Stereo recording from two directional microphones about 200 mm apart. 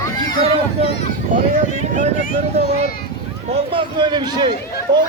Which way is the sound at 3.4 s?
30° right (ahead or behind).